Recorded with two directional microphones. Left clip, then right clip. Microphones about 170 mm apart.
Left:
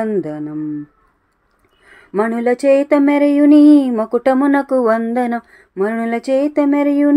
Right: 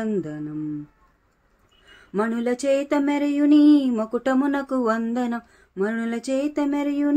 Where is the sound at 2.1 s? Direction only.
15° left (ahead or behind).